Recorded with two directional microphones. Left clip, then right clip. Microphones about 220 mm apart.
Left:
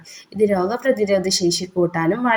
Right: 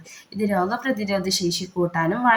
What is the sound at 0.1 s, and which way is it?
Speech, 15° left (ahead or behind).